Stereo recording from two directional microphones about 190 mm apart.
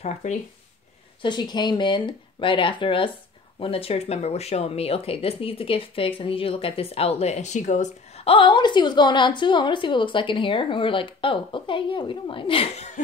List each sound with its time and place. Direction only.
0.0 s speech: 35° left (ahead or behind)
1.2 s speech: 25° left (ahead or behind)